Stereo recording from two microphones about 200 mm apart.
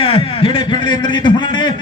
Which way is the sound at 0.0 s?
25° left (ahead or behind).